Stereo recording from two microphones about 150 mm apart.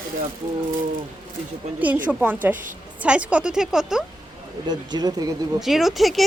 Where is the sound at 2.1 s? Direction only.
10° right (ahead or behind).